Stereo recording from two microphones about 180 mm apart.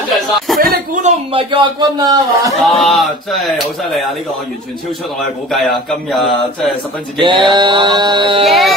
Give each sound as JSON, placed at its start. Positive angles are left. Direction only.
{"t": 0.5, "sound": "a sound", "side_deg": 0}
{"t": 1.0, "sound": "a man's voice", "side_deg": -30}
{"t": 2.6, "sound": "speech", "side_deg": 0}
{"t": 5.5, "sound": "speech", "side_deg": 0}
{"t": 7.2, "sound": "a man's voice", "side_deg": -25}
{"t": 8.5, "sound": "speech", "side_deg": 0}